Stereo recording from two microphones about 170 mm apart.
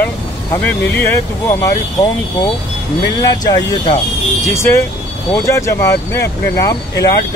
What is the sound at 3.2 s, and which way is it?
Speech, 25° left (ahead or behind).